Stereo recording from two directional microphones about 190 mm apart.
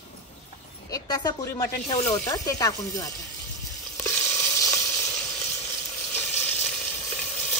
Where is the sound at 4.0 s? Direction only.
15° left (ahead or behind).